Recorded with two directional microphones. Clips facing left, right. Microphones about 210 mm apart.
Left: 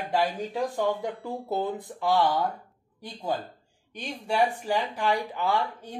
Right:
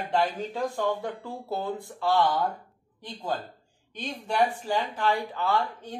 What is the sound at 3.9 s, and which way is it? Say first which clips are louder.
Speech: even; 10° left (ahead or behind).